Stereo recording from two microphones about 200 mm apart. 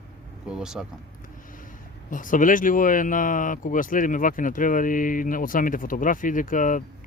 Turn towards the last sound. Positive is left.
turn(degrees=40)  # may be behind; listen again after turning